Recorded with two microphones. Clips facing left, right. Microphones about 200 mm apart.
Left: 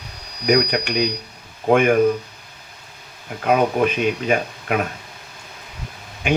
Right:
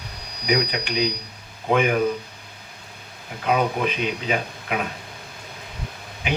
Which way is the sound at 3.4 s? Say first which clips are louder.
Left 4 dB; 45° left (ahead or behind).